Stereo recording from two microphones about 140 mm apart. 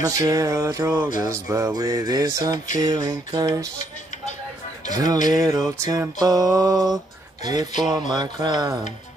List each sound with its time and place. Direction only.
0.0 s music: 25° right (ahead or behind)
4.9 s music: 25° right (ahead or behind)
8.1 s a sound: 30° right (ahead or behind)